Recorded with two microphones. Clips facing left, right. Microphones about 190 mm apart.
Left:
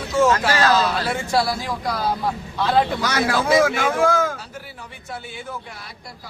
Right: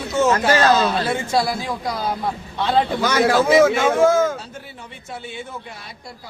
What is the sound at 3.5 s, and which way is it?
Speech, 25° right (ahead or behind).